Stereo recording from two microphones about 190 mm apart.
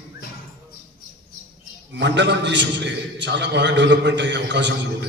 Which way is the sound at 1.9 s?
65° right (ahead or behind).